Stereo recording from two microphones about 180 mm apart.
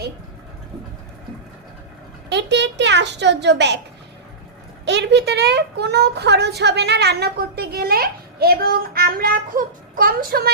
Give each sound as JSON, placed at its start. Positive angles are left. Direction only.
{"t": 2.3, "sound": "a child's voice", "side_deg": -75}
{"t": 4.9, "sound": "speech", "side_deg": -70}